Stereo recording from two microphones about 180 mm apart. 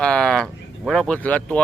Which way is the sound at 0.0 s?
5° left (ahead or behind).